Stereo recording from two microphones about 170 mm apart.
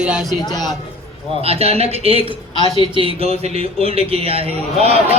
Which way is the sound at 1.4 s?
35° right (ahead or behind).